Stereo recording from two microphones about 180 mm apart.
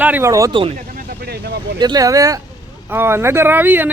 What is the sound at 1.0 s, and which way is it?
Vehicle, 60° right (ahead or behind).